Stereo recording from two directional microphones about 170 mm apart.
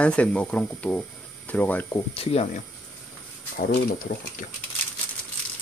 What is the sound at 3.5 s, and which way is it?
Speech, 60° left (ahead or behind).